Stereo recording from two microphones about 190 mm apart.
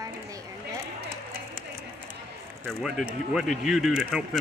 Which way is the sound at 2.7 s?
Centre (ahead or behind).